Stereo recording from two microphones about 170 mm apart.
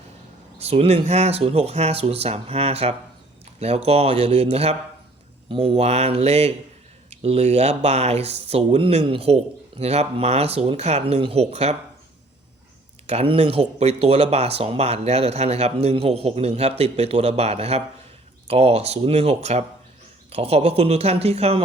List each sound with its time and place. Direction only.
0.6 s speech: 35° right (ahead or behind)
13.1 s speech: 35° right (ahead or behind)